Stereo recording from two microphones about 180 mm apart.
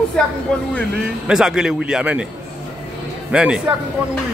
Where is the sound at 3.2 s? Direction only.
5° right (ahead or behind).